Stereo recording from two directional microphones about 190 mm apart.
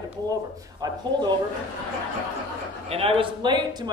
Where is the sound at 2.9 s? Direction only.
30° right (ahead or behind).